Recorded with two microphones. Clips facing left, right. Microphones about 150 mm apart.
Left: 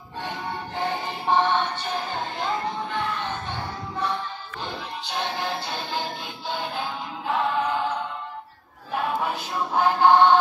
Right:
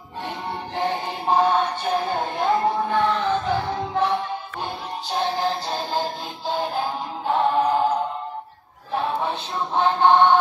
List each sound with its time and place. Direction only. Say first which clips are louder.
0.7 s music: right 4 dB; 35° right (ahead or behind)
2.9 s music: right 8 dB; 80° right
4.6 s music: right 1 dB; 40° right (ahead or behind); by 10.3 s 20° right (ahead or behind)